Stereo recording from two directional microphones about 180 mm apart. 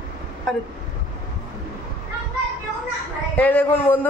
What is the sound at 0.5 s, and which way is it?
Vehicle, centre (ahead or behind).